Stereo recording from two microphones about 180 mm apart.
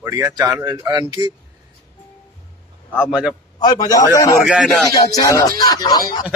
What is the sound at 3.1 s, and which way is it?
Speech, 5° right (ahead or behind).